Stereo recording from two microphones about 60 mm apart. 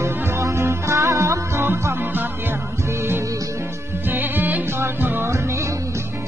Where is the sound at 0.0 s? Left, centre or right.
Right.